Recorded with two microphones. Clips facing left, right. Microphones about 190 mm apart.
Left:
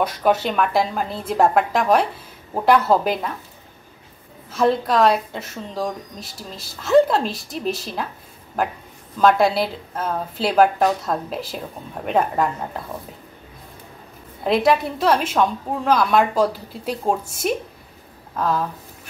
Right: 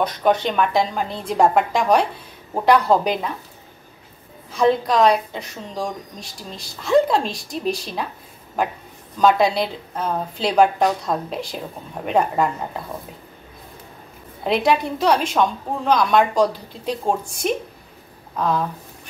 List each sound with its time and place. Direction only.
0.0 s a woman's voice: 5° left (ahead or behind)
4.5 s a woman's voice: 5° left (ahead or behind)
9.2 s a woman's voice: 5° left (ahead or behind)
14.4 s a woman's voice: centre (ahead or behind)